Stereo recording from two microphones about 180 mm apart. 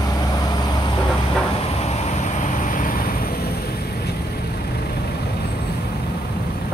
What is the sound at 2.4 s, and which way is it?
Vehicle, 45° left (ahead or behind).